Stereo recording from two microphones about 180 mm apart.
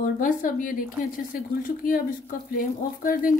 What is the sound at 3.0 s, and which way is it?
Speech, 50° left (ahead or behind).